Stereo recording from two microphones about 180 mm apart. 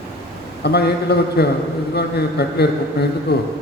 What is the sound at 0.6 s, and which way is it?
A man's voice, 65° left (ahead or behind).